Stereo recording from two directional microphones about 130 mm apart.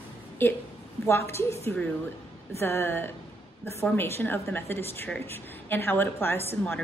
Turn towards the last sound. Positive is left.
turn(degrees=15)  # may be behind; listen again after turning